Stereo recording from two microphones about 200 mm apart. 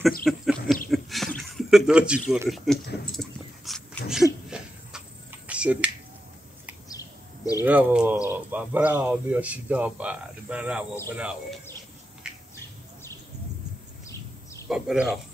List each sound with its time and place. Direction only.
0.2 s a sound: centre (ahead or behind)
2.5 s speech: centre (ahead or behind)
3.2 s dog: centre (ahead or behind)
5.5 s finger snapping: 5° right (ahead or behind)
6.9 s a sound: 15° left (ahead or behind)
7.6 s speech: 5° right (ahead or behind)
12.2 s bird: 5° right (ahead or behind)
14.7 s speech: centre (ahead or behind)